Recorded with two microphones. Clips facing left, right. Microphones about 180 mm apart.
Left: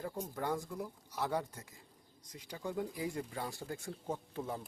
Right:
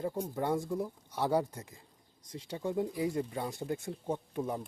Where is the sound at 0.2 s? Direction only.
25° right (ahead or behind).